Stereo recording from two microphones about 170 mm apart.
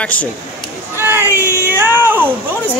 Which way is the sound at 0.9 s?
15° right (ahead or behind).